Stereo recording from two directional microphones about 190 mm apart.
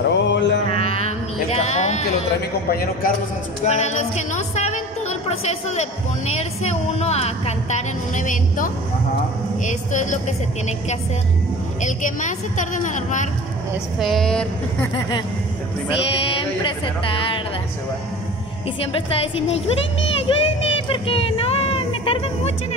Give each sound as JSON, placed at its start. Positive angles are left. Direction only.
{"t": 0.1, "sound": "mantra", "side_deg": 65}
{"t": 0.7, "sound": "a sound", "side_deg": 30}
{"t": 2.7, "sound": "a man's voice", "side_deg": 55}
{"t": 3.6, "sound": "a woman's voice", "side_deg": 35}
{"t": 11.8, "sound": "a woman's voice", "side_deg": 40}
{"t": 13.9, "sound": "speech", "side_deg": 0}
{"t": 16.1, "sound": "music", "side_deg": 25}
{"t": 18.9, "sound": "speech", "side_deg": 30}